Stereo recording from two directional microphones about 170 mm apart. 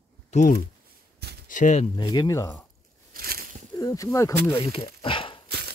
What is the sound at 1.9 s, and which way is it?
Speech, 25° left (ahead or behind).